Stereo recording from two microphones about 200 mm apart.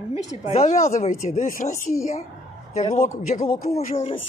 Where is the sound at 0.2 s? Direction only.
35° left (ahead or behind).